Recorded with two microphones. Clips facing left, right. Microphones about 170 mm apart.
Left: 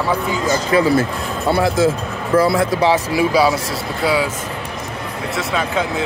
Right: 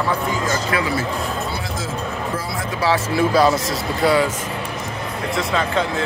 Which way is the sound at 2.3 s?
80° left.